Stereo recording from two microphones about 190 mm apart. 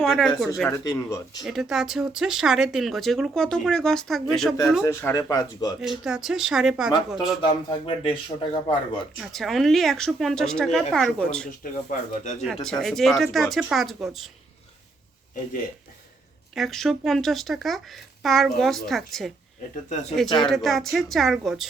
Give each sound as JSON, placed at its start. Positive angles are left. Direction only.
{"t": 0.0, "sound": "speech", "side_deg": 0}
{"t": 0.9, "sound": "speech", "side_deg": 20}
{"t": 1.5, "sound": "speech", "side_deg": 0}
{"t": 4.8, "sound": "speech", "side_deg": 15}
{"t": 5.8, "sound": "speech", "side_deg": -5}
{"t": 7.4, "sound": "speech", "side_deg": 25}
{"t": 9.1, "sound": "speech", "side_deg": 0}
{"t": 11.6, "sound": "speech", "side_deg": 45}
{"t": 12.6, "sound": "speech", "side_deg": 0}
{"t": 16.6, "sound": "speech", "side_deg": 0}
{"t": 20.2, "sound": "speech", "side_deg": 25}
{"t": 20.5, "sound": "speech", "side_deg": 0}